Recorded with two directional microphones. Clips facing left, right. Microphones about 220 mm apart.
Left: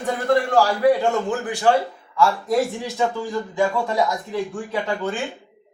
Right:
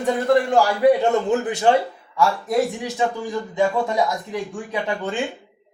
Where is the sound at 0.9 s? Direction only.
20° right (ahead or behind).